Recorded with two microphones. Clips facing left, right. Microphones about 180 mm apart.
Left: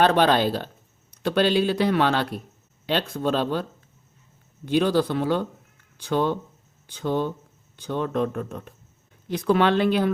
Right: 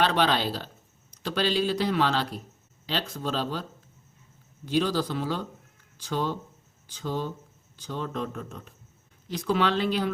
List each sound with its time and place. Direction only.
0.0 s speech: 50° left (ahead or behind)